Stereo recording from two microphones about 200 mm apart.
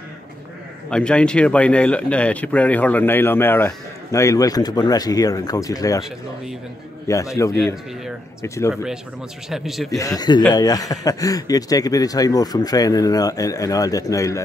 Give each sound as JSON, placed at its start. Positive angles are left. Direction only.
{"t": 0.8, "sound": "a man's voice", "side_deg": 5}
{"t": 7.1, "sound": "a man's voice", "side_deg": 15}
{"t": 7.5, "sound": "speech", "side_deg": 0}
{"t": 8.4, "sound": "a man's voice", "side_deg": 15}
{"t": 9.5, "sound": "speech", "side_deg": 0}
{"t": 9.8, "sound": "a man's voice", "side_deg": 15}